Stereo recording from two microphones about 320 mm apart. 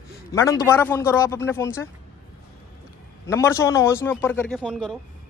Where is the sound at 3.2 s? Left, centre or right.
Centre.